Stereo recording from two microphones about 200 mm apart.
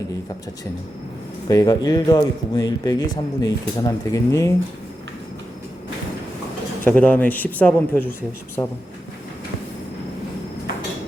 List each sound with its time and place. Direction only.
1.5 s a man's voice: 20° left (ahead or behind)
6.8 s a man's voice: 10° left (ahead or behind)